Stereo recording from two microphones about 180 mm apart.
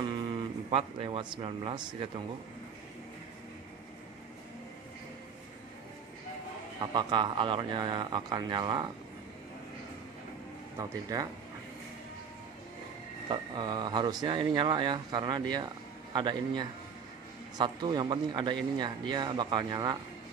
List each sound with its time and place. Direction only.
0.0 s speech: 25° right (ahead or behind)
6.8 s speech: 25° right (ahead or behind)
10.8 s speech: 20° right (ahead or behind)
13.3 s speech: 25° right (ahead or behind)